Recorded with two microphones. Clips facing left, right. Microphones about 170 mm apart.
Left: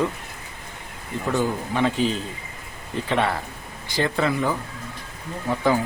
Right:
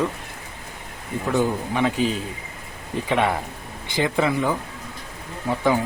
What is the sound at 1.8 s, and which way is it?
Speech, 5° right (ahead or behind).